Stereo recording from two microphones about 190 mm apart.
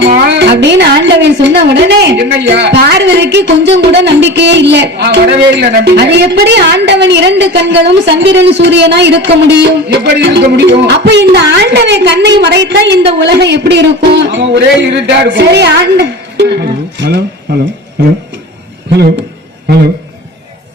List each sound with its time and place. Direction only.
0.3 s a woman's voice: 60° right (ahead or behind)